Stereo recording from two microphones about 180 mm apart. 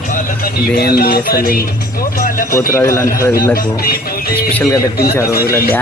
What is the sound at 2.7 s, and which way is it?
Speech, 15° left (ahead or behind).